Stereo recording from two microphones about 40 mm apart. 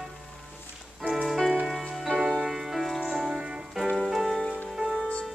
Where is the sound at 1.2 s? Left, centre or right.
Centre.